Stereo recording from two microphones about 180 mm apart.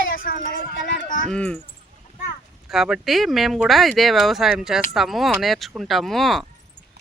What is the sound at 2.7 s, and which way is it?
Speech, centre (ahead or behind).